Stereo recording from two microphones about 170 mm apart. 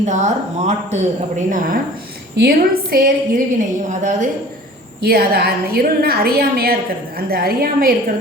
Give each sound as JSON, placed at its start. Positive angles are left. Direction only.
{"t": 0.0, "sound": "a woman's voice", "side_deg": -45}
{"t": 2.3, "sound": "a woman's voice", "side_deg": -70}
{"t": 5.0, "sound": "a woman's voice", "side_deg": -65}